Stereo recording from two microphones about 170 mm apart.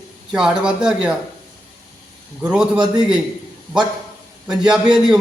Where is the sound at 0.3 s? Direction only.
5° right (ahead or behind).